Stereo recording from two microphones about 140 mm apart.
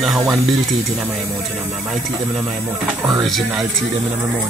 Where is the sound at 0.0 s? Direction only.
5° right (ahead or behind).